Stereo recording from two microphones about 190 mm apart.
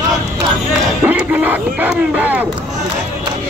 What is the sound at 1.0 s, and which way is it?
Speech, 10° right (ahead or behind).